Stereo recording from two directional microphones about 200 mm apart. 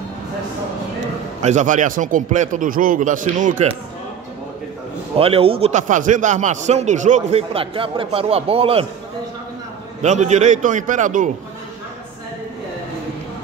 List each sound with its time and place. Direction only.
1.4 s speech: 35° right (ahead or behind)
5.1 s speech: 30° right (ahead or behind)
10.0 s speech: 35° right (ahead or behind)